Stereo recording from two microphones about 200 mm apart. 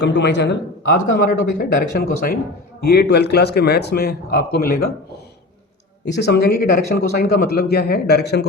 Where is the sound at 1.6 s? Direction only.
45° left (ahead or behind).